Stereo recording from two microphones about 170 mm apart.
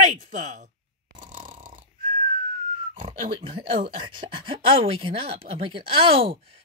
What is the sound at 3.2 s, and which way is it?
Speech, 30° right (ahead or behind).